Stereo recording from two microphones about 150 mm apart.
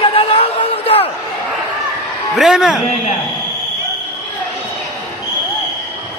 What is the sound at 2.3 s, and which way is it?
Speech, 5° right (ahead or behind).